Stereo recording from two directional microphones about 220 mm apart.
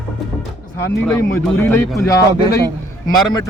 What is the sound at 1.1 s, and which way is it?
Speech, 10° left (ahead or behind).